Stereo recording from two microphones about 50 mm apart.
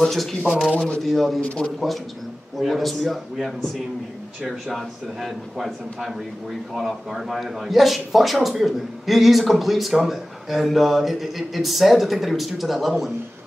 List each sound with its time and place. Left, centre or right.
0.0 s a man's voice: centre
0.5 s speech: centre
0.7 s speech: left
1.0 s a man's voice: centre
2.5 s a man's voice: centre